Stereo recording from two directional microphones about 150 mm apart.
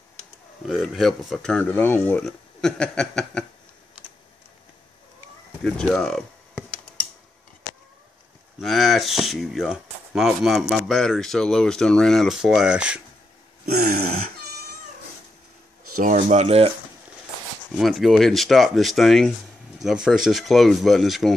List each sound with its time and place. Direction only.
0.7 s speech: centre (ahead or behind)
5.6 s speech: 5° left (ahead or behind)
8.5 s speech: centre (ahead or behind)
13.9 s a sound: 85° right
16.0 s speech: 55° right (ahead or behind)
17.7 s speech: centre (ahead or behind)